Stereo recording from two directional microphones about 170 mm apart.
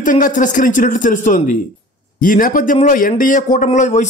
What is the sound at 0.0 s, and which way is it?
A man's voice, 50° left (ahead or behind).